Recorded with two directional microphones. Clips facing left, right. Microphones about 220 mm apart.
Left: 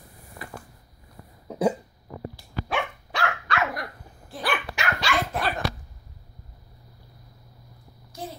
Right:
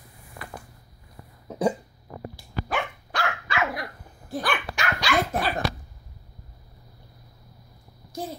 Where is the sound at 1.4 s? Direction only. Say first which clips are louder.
Left 1 dB; centre (ahead or behind).